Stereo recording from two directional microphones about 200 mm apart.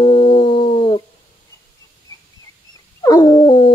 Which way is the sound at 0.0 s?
25° left (ahead or behind).